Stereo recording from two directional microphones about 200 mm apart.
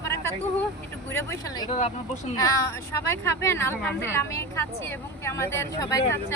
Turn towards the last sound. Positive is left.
turn(degrees=15)  # may be behind; listen again after turning